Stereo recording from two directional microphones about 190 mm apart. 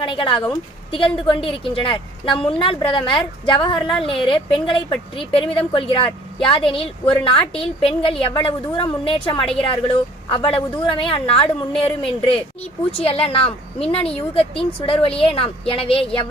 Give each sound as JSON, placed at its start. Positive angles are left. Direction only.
{"t": 0.0, "sound": "a woman's voice", "side_deg": 25}
{"t": 12.9, "sound": "a woman's voice", "side_deg": 30}